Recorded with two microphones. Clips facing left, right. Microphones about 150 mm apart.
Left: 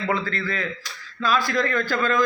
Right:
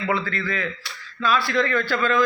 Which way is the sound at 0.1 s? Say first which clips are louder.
Right 1 dB; 40° left (ahead or behind).